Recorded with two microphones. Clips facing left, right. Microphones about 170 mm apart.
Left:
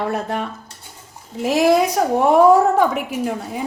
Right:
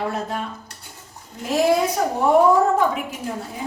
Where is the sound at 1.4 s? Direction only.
80° left.